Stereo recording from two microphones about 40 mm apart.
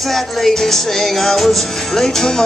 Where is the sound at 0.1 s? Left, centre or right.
Centre.